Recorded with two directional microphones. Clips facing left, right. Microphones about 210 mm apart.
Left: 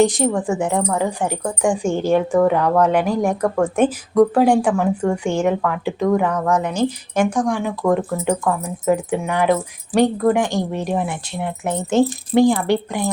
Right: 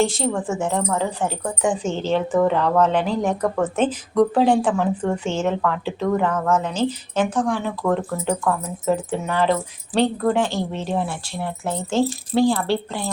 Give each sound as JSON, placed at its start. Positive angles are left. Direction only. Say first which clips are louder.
{"t": 0.0, "sound": "a woman's voice", "louder": "left 5 dB", "side_deg": 15}